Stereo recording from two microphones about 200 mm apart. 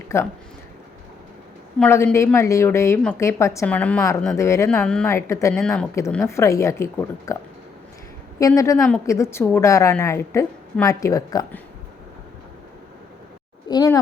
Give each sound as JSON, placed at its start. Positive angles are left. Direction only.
{"t": 0.1, "sound": "speech", "side_deg": 15}
{"t": 1.8, "sound": "speech", "side_deg": 10}
{"t": 8.4, "sound": "speech", "side_deg": 15}
{"t": 13.7, "sound": "speech", "side_deg": 20}